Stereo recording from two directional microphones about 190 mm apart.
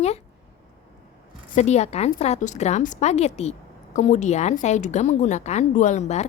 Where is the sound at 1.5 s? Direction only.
35° left (ahead or behind).